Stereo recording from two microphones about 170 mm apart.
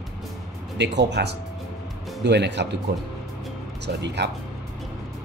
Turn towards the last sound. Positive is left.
turn(degrees=-90)